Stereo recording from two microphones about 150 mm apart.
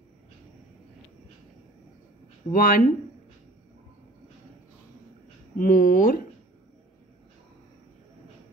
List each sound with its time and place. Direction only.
2.5 s speech: 70° left (ahead or behind)
5.6 s speech: 65° left (ahead or behind)